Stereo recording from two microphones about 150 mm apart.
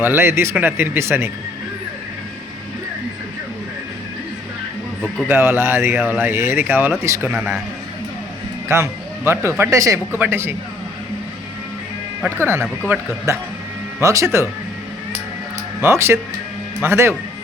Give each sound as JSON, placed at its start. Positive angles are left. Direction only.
{"t": 0.0, "sound": "speech", "side_deg": -15}
{"t": 5.3, "sound": "speech", "side_deg": -15}
{"t": 7.3, "sound": "a man's voice", "side_deg": -5}
{"t": 8.7, "sound": "speech", "side_deg": -15}
{"t": 12.4, "sound": "speech", "side_deg": -15}
{"t": 15.8, "sound": "speech", "side_deg": -20}